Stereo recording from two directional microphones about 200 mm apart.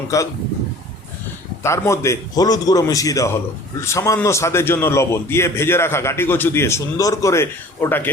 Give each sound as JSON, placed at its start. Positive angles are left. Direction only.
{"t": 0.1, "sound": "a man's voice", "side_deg": 15}
{"t": 1.6, "sound": "a man's voice", "side_deg": 15}